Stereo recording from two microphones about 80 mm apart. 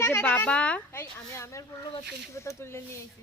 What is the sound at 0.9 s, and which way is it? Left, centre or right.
Speech, left.